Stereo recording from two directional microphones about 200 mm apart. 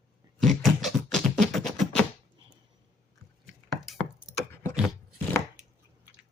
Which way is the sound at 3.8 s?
Centre (ahead or behind).